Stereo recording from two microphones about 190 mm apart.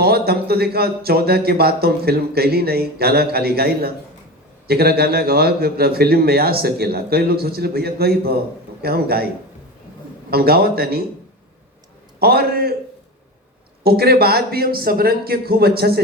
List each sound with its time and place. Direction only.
0.0 s a man's voice: 55° right (ahead or behind)
12.2 s speech: 55° right (ahead or behind)
13.8 s a man's voice: 55° right (ahead or behind)